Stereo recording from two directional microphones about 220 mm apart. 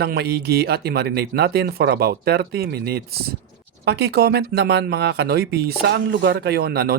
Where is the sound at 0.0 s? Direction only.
45° right (ahead or behind).